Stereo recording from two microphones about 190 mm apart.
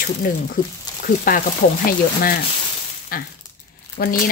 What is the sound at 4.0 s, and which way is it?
Speech, 50° left (ahead or behind).